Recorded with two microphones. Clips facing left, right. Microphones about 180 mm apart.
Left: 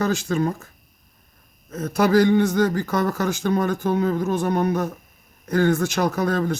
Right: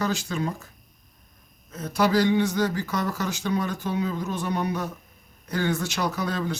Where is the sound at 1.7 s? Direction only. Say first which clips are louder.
Left 4 dB; 50° left (ahead or behind).